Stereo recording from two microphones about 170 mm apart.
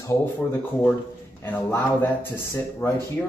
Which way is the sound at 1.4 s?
10° left (ahead or behind).